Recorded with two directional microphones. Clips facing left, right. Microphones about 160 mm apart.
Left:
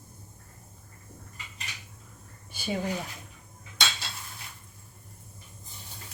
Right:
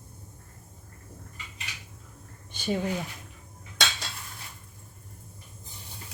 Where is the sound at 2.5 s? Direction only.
10° left (ahead or behind).